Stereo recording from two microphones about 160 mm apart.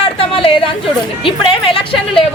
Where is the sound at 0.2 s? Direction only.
35° left (ahead or behind).